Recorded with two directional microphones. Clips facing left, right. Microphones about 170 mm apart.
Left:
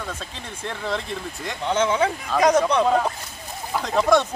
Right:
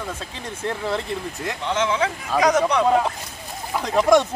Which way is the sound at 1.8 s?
30° left (ahead or behind).